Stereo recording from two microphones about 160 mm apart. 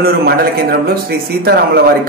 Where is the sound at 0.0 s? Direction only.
70° right (ahead or behind).